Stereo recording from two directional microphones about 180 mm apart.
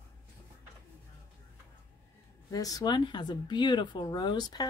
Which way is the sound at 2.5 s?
20° left (ahead or behind).